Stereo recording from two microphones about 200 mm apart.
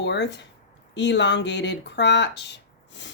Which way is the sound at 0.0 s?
60° left (ahead or behind).